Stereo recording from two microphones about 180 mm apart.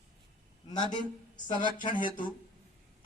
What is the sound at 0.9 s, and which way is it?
Speech, 25° left (ahead or behind).